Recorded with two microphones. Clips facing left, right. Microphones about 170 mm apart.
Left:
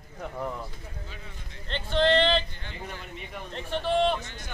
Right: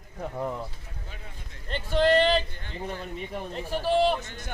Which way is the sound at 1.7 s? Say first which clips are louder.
Right 1 dB; 10° right (ahead or behind).